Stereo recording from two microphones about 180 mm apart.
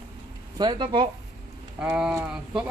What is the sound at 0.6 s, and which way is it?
Speech, 25° right (ahead or behind).